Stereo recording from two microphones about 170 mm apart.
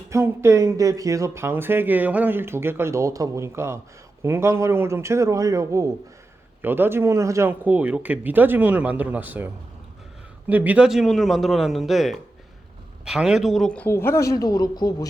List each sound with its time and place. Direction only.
0.1 s speech: 15° right (ahead or behind)
10.5 s a man's voice: 10° right (ahead or behind); by 15.0 s 25° left (ahead or behind)